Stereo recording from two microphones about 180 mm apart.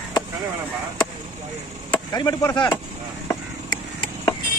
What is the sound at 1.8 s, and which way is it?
Chop, 20° left (ahead or behind).